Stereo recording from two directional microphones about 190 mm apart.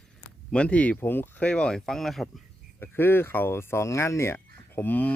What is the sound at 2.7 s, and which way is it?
Speech, 10° left (ahead or behind).